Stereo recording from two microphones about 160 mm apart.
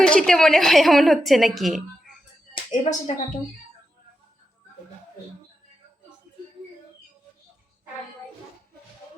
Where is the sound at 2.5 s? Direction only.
50° left (ahead or behind).